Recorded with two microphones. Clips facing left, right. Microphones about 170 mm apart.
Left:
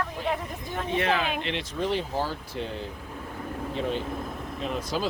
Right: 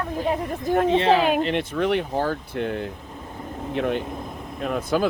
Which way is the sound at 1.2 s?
45° right (ahead or behind).